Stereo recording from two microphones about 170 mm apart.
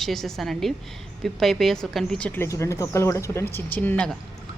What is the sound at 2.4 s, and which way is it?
Speech, 15° left (ahead or behind).